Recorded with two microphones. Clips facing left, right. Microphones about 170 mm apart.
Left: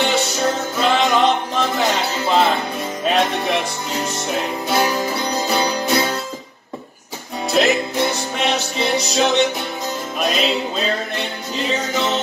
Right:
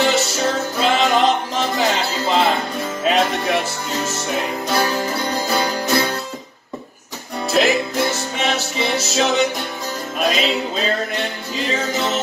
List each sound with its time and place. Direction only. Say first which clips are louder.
0.0 s music: right 1 dB; centre (ahead or behind)
4.7 s music: left 1 dB; 20° left (ahead or behind)
7.5 s music: even; centre (ahead or behind)